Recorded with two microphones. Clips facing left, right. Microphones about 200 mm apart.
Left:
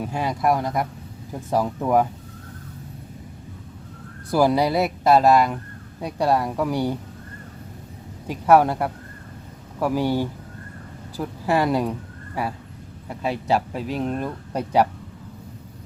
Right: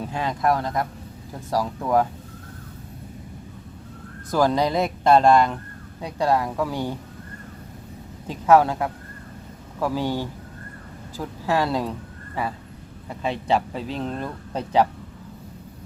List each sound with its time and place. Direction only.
0.0 s speech: 10° left (ahead or behind)
4.3 s speech: 10° left (ahead or behind)
8.3 s speech: 10° left (ahead or behind)